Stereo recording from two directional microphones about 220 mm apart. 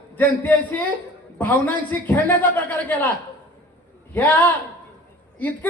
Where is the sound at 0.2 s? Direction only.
10° left (ahead or behind).